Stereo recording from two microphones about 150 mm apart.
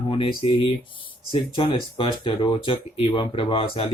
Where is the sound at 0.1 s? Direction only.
35° left (ahead or behind).